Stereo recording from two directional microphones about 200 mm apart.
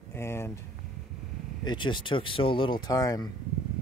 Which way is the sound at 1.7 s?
25° left (ahead or behind).